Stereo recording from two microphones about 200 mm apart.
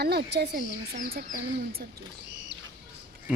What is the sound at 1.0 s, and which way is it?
Speech, 45° right (ahead or behind).